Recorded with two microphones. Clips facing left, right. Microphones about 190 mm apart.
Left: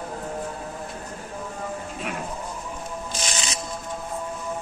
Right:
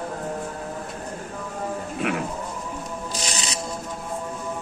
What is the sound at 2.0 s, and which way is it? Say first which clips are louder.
Sheep: right 9 dB; 70° right (ahead or behind).